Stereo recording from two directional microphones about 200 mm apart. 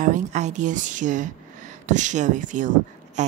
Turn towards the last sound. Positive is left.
turn(degrees=-35)  # may be behind; listen again after turning